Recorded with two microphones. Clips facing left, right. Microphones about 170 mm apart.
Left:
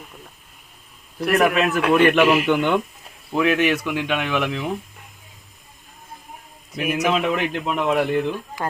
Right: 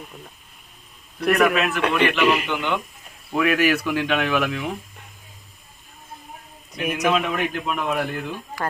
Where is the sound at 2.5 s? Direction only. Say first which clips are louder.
Left 6 dB; 50° left (ahead or behind).